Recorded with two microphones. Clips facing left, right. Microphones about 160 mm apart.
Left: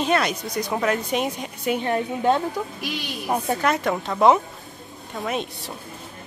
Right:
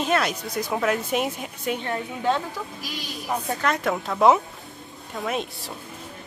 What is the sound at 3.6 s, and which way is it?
Speech, centre (ahead or behind).